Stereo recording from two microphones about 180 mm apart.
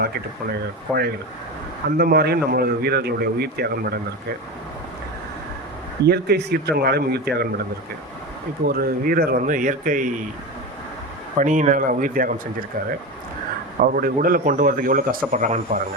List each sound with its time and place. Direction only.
2.0 s a man's voice: 60° right (ahead or behind)
6.1 s a man's voice: 65° right (ahead or behind)
8.6 s speech: 55° right (ahead or behind)
11.3 s speech: 45° right (ahead or behind)
13.7 s speech: 50° right (ahead or behind)